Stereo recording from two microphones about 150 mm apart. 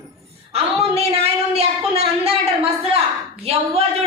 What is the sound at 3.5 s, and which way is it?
Speech, 40° right (ahead or behind).